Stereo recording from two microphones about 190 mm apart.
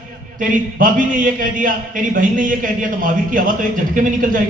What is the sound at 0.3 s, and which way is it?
A man's voice, 45° right (ahead or behind).